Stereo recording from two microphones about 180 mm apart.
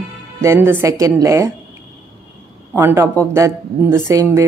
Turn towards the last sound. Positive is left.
turn(degrees=-20)  # may be behind; listen again after turning